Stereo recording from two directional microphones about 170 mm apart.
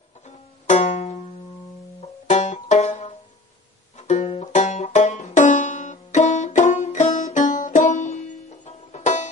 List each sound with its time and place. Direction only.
0.7 s music: 45° left (ahead or behind)
4.1 s banjo: 40° left (ahead or behind)